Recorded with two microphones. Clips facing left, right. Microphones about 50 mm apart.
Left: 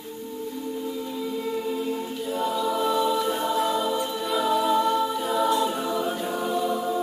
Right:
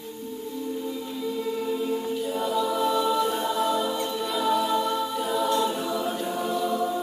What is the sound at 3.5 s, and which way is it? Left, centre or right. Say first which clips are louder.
Music: left 1 dB; centre.